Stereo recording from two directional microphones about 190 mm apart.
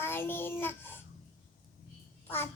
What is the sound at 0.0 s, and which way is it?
Child singing, 10° left (ahead or behind).